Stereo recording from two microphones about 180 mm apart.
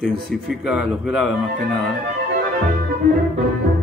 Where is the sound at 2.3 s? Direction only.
50° right (ahead or behind).